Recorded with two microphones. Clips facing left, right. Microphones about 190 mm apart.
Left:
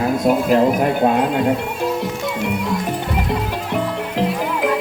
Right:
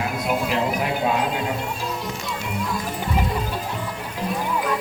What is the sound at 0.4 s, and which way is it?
Speech, 45° left (ahead or behind).